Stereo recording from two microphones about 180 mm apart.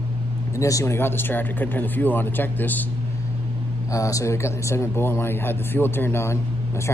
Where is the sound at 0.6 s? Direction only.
15° left (ahead or behind).